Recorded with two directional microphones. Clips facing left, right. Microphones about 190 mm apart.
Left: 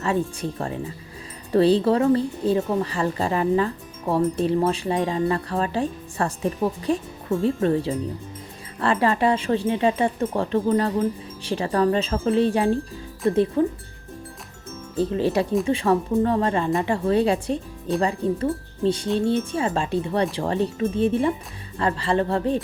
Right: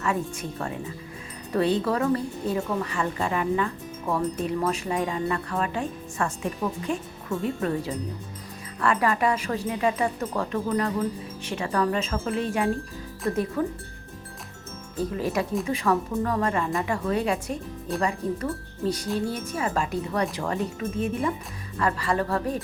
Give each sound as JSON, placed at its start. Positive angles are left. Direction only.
{"t": 1.5, "sound": "a woman's voice", "side_deg": 30}
{"t": 14.9, "sound": "a woman's voice", "side_deg": 30}